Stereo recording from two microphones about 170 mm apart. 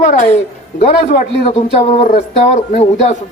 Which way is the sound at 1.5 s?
35° left (ahead or behind).